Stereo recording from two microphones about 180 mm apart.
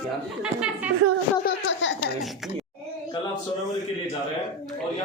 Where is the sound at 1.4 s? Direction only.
80° left.